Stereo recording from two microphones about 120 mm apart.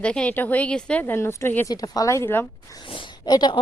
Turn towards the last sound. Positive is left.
turn(degrees=35)  # may be behind; listen again after turning